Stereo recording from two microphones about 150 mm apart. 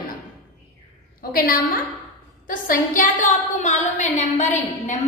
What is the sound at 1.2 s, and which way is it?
Speech, 75° left (ahead or behind).